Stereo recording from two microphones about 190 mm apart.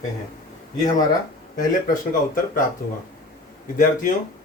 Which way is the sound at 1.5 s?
45° left (ahead or behind).